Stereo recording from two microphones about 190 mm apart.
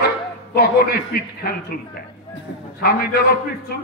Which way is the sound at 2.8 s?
55° left (ahead or behind).